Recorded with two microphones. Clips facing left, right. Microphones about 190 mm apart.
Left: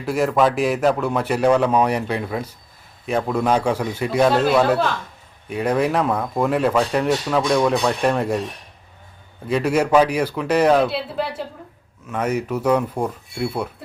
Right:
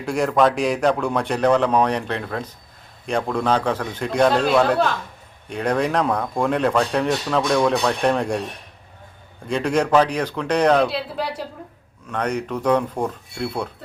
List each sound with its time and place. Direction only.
0.0 s speech: 5° left (ahead or behind)
9.5 s speech: 5° left (ahead or behind)